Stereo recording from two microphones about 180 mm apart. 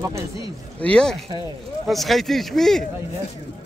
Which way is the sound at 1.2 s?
25° right (ahead or behind).